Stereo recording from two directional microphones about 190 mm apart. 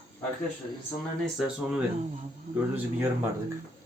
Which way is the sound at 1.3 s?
5° right (ahead or behind).